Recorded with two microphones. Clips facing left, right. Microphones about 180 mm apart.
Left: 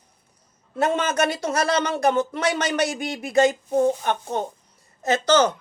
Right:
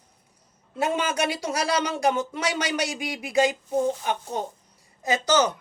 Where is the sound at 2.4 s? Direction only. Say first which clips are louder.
Left 2 dB; 55° left (ahead or behind).